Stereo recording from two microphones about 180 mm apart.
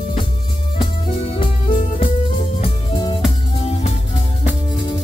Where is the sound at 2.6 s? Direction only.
30° left (ahead or behind).